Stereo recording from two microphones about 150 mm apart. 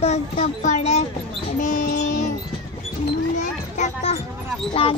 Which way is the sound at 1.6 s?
60° left (ahead or behind).